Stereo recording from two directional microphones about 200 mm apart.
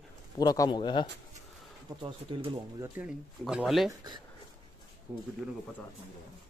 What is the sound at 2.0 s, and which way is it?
Speech, 25° right (ahead or behind).